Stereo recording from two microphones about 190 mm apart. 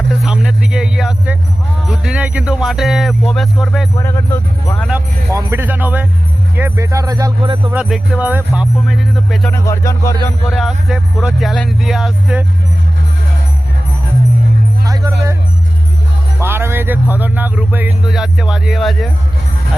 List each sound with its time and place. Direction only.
0.1 s speech: 5° right (ahead or behind)
3.9 s music: 15° left (ahead or behind)
4.9 s speech: 15° right (ahead or behind)
7.7 s speech: 5° right (ahead or behind)
9.5 s music: 15° left (ahead or behind)
10.5 s speech: centre (ahead or behind)
14.8 s music: 20° right (ahead or behind)
16.4 s speech: 10° right (ahead or behind)